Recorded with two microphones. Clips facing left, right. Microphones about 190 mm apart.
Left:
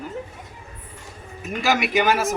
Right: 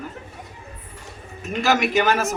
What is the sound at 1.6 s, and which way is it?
Speech, 10° left (ahead or behind).